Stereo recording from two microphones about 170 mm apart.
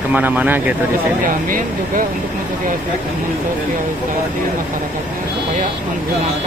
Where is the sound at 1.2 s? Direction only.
55° right (ahead or behind).